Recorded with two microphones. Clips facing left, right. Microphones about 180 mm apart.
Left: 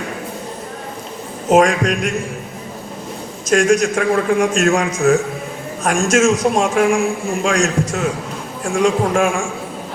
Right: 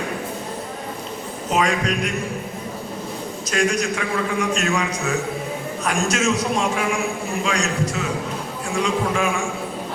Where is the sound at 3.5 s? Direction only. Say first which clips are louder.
Left 8 dB; 45° left (ahead or behind).